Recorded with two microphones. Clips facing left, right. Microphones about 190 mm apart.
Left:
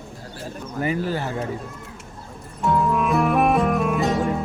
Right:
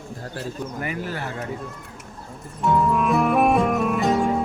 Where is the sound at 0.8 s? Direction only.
30° left (ahead or behind).